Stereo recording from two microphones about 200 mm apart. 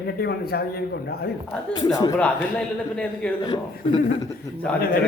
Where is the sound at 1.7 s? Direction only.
20° left (ahead or behind).